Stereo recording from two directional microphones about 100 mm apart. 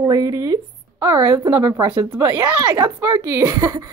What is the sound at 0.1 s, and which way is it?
Speech, 35° right (ahead or behind).